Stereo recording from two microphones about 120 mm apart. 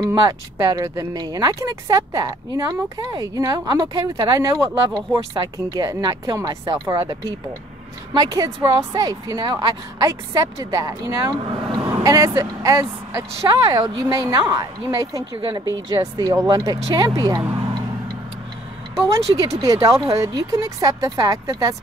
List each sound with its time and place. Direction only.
0.0 s speech: 30° right (ahead or behind)
17.6 s tick-tock: 35° right (ahead or behind)
18.9 s speech: 25° right (ahead or behind)